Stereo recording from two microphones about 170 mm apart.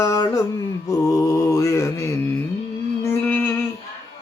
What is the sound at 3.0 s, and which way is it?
Music, 10° left (ahead or behind).